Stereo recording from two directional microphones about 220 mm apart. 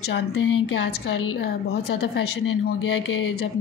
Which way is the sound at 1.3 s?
50° left (ahead or behind).